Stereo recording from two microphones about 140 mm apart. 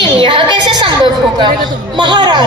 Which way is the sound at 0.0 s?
35° right (ahead or behind).